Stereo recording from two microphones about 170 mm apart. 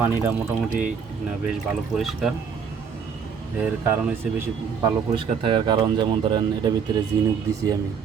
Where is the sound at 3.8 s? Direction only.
15° right (ahead or behind).